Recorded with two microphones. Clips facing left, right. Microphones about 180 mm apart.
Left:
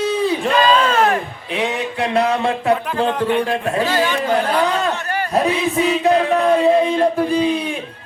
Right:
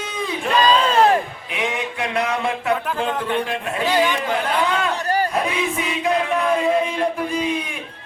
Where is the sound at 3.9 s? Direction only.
15° right (ahead or behind).